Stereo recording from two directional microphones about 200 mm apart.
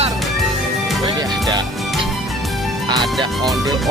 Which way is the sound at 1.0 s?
20° right (ahead or behind).